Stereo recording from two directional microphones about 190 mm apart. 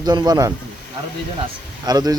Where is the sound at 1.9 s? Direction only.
20° right (ahead or behind).